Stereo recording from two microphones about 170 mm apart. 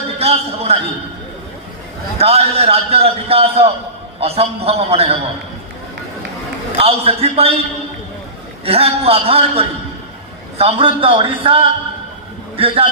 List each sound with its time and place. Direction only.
0.2 s a sound: 35° right (ahead or behind)
2.1 s a man's voice: 35° right (ahead or behind)
6.8 s a man's voice: 35° right (ahead or behind)
8.6 s a man's voice: 35° right (ahead or behind)